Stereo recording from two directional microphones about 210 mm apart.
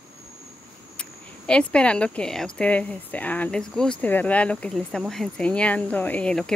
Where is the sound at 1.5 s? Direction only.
5° left (ahead or behind).